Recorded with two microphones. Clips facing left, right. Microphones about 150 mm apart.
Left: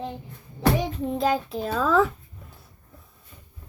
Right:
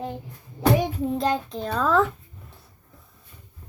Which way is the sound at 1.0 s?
Centre (ahead or behind).